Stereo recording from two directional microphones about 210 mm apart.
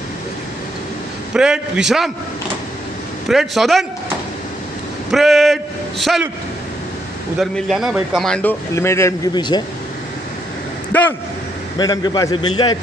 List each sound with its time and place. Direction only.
1.3 s a man's voice: 5° right (ahead or behind)
3.3 s a man's voice: centre (ahead or behind)
5.1 s a man's voice: centre (ahead or behind)
7.3 s speech: centre (ahead or behind); by 9.6 s 20° left (ahead or behind)
10.9 s a sound: 10° left (ahead or behind)
11.8 s a man's voice: 20° left (ahead or behind)